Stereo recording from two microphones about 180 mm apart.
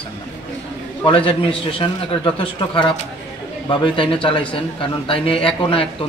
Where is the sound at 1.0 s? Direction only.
30° left (ahead or behind).